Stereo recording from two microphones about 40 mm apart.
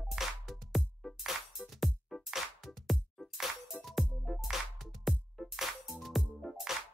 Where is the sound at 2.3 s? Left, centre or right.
Centre.